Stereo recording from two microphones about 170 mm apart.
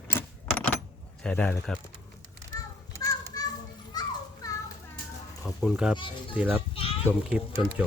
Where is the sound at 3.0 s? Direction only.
25° left (ahead or behind).